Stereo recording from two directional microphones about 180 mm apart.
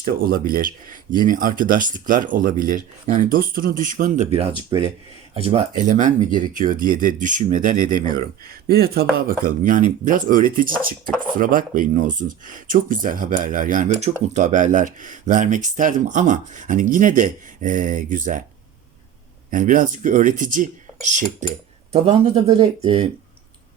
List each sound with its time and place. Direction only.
0.0 s speech: 55° right (ahead or behind)
8.6 s speech: 60° right (ahead or behind)
19.5 s a man's voice: 45° right (ahead or behind); by 23.0 s 30° right (ahead or behind)